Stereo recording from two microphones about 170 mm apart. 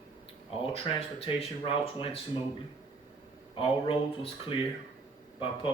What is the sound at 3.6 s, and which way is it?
Speech, 30° left (ahead or behind).